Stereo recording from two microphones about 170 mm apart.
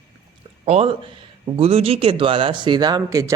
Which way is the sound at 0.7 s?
35° right (ahead or behind).